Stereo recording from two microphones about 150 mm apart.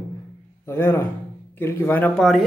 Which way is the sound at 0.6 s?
15° left (ahead or behind).